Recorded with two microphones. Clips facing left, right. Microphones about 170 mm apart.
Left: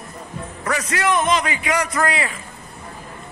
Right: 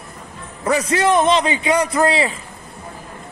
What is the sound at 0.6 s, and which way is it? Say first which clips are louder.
A man's voice: right 6 dB; 25° right (ahead or behind).